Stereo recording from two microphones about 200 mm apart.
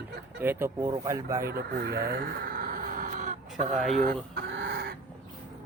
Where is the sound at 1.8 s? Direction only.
50° right (ahead or behind).